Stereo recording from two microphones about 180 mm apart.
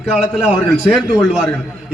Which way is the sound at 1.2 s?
5° left (ahead or behind).